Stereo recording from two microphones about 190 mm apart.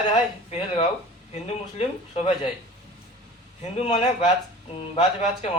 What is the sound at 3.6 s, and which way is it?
Speech, 30° left (ahead or behind).